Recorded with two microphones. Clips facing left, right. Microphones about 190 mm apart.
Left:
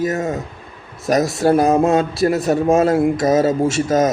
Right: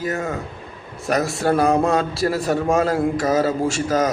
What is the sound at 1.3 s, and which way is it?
A man's voice, 25° left (ahead or behind).